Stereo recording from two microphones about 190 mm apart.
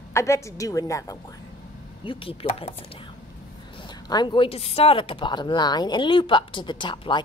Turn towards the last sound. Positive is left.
turn(degrees=25)  # may be behind; listen again after turning